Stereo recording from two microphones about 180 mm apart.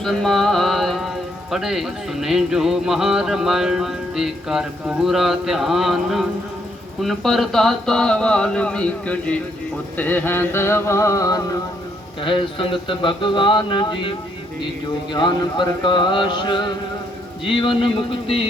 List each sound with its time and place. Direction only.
0.0 s speech: centre (ahead or behind)
10.0 s a sound: 10° left (ahead or behind)
12.2 s speech: 30° left (ahead or behind)
15.1 s speech: 25° left (ahead or behind)